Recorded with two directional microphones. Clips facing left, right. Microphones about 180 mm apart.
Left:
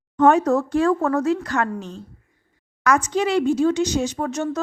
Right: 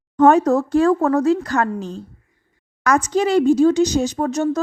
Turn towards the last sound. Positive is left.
turn(degrees=-35)  # may be behind; listen again after turning